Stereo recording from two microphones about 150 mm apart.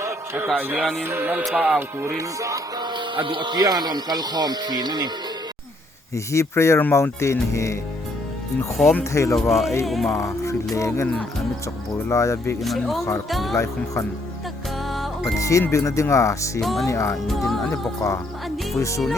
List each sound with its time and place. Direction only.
0.0 s a man's voice: 15° right (ahead or behind)
1.0 s music: 15° right (ahead or behind)
1.5 s speech: 5° right (ahead or behind)
2.0 s speech: 20° right (ahead or behind)
6.1 s speech: 20° left (ahead or behind)
8.8 s speech: 10° left (ahead or behind)
10.1 s music: 20° left (ahead or behind)
10.8 s speech: 20° left (ahead or behind)
12.6 s speech: centre (ahead or behind)
15.4 s speech: 20° left (ahead or behind)
16.6 s speech: centre (ahead or behind)
16.8 s speech: 20° left (ahead or behind)